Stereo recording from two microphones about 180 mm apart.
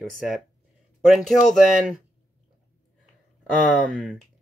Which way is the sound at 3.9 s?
5° left (ahead or behind).